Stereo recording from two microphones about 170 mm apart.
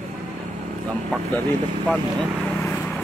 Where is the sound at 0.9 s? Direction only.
10° left (ahead or behind).